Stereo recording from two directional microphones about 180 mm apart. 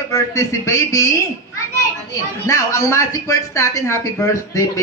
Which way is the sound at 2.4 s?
15° left (ahead or behind).